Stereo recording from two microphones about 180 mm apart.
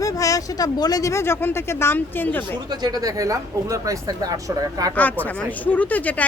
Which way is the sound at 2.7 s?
20° right (ahead or behind).